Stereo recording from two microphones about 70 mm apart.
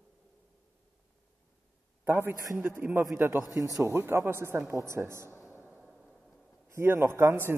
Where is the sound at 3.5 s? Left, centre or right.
Right.